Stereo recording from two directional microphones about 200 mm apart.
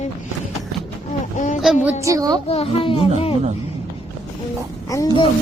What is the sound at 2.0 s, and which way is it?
Speech, 15° right (ahead or behind).